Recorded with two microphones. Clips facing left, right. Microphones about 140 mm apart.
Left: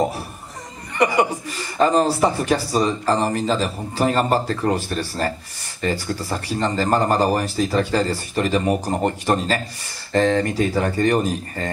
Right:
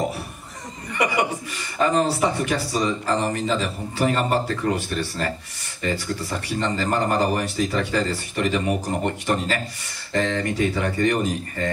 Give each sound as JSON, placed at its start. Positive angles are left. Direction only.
{"t": 1.0, "sound": "speech", "side_deg": 35}